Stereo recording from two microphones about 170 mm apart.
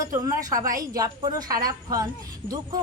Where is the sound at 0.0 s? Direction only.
20° right (ahead or behind).